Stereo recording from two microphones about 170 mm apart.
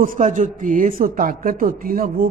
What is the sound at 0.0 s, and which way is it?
Speech, 50° right (ahead or behind).